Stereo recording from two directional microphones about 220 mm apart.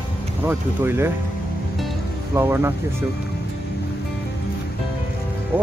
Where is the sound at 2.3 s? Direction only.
10° right (ahead or behind).